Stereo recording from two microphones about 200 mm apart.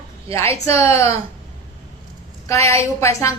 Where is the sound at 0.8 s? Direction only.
15° left (ahead or behind).